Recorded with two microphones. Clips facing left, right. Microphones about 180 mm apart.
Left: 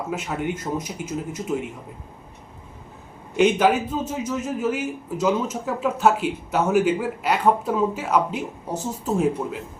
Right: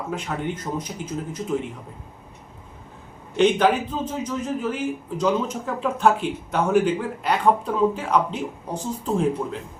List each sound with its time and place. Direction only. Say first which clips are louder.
0.1 s a man's voice: left 1 dB; 10° left (ahead or behind)
3.3 s a man's voice: even; 10° left (ahead or behind)